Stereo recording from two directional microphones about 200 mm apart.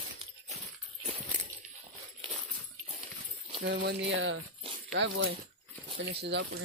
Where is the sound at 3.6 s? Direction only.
60° right (ahead or behind).